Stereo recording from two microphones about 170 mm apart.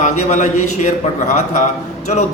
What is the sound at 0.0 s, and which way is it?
A man's voice, 45° left (ahead or behind).